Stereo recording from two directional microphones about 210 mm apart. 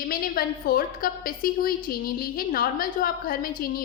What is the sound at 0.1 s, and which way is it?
A woman's voice, 45° left (ahead or behind).